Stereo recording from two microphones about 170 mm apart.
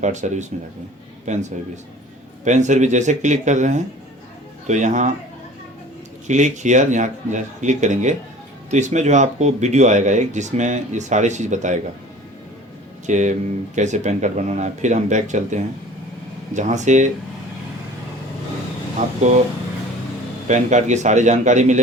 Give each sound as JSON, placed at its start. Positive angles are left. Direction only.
{"t": 0.0, "sound": "speech", "side_deg": -45}
{"t": 6.2, "sound": "speech", "side_deg": -45}
{"t": 13.1, "sound": "speech", "side_deg": -45}
{"t": 18.9, "sound": "speech", "side_deg": -45}
{"t": 20.5, "sound": "speech", "side_deg": -45}